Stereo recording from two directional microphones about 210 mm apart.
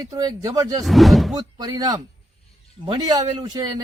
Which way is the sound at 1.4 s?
20° right (ahead or behind).